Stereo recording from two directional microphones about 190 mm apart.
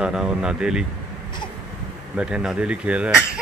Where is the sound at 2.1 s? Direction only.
5° right (ahead or behind).